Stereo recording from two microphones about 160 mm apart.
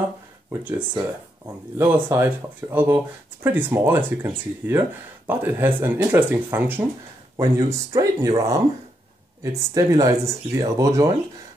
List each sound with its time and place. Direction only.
0.5 s speech: 15° right (ahead or behind)
7.3 s speech: 20° right (ahead or behind)